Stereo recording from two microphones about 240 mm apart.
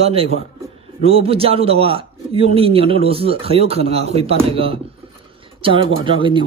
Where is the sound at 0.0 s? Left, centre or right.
Right.